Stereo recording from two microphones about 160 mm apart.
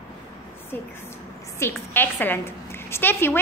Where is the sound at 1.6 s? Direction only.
15° left (ahead or behind).